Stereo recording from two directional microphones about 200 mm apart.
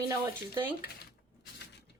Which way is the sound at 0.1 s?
15° right (ahead or behind).